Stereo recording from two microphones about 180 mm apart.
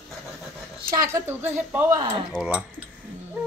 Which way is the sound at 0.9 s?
20° right (ahead or behind).